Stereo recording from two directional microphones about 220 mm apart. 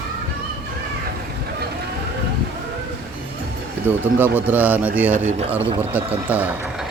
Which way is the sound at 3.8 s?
10° right (ahead or behind).